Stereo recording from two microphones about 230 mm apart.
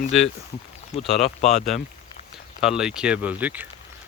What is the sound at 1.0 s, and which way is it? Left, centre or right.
Speech, left.